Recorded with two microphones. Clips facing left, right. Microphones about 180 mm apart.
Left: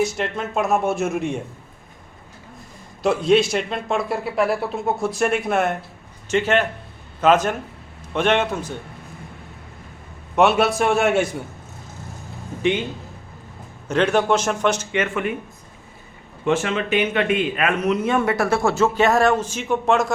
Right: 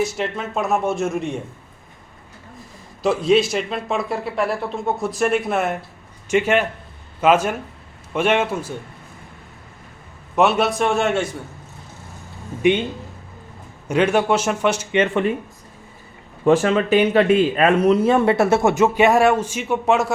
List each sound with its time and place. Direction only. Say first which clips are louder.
0.0 s a man's voice: even; centre (ahead or behind)
3.0 s a man's voice: even; centre (ahead or behind)
6.2 s a man's voice: right 1 dB; 10° right (ahead or behind)
10.3 s a man's voice: left 1 dB; centre (ahead or behind)
13.8 s a man's voice: right 1 dB; 10° right (ahead or behind)
14.9 s speech: right 4 dB; 30° right (ahead or behind)
16.4 s a man's voice: right 5 dB; 40° right (ahead or behind); by 20.1 s 5° right (ahead or behind)